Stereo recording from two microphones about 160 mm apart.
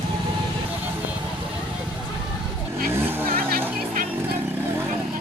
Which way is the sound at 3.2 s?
65° right (ahead or behind).